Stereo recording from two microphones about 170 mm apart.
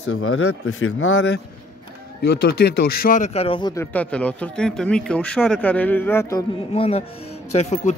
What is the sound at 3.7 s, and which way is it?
Speech, 10° left (ahead or behind).